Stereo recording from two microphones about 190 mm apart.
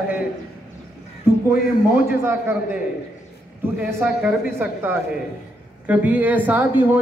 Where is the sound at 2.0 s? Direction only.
10° right (ahead or behind).